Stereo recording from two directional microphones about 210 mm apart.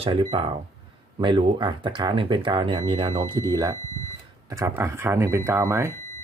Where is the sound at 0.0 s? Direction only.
25° right (ahead or behind).